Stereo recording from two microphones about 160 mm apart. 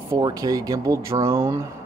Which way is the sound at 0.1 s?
20° right (ahead or behind).